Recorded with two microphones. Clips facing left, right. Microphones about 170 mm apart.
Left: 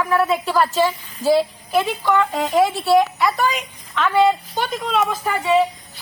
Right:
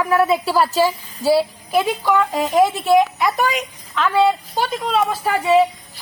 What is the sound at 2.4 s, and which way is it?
A woman's voice, 15° right (ahead or behind).